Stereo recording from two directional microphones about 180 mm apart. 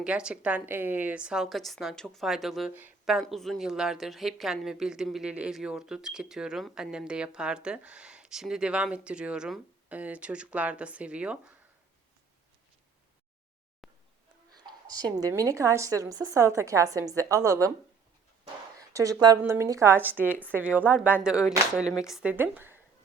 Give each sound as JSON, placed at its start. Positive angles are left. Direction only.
{"t": 0.0, "sound": "a woman's voice", "side_deg": -5}
{"t": 13.8, "sound": "a sound", "side_deg": 0}
{"t": 14.7, "sound": "a woman's voice", "side_deg": -20}
{"t": 18.8, "sound": "a woman's voice", "side_deg": -20}